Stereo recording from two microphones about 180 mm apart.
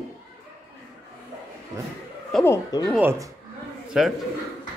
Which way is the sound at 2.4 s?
15° left (ahead or behind).